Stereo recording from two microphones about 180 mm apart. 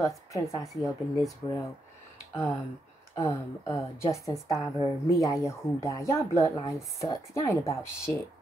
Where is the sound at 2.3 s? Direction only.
15° left (ahead or behind).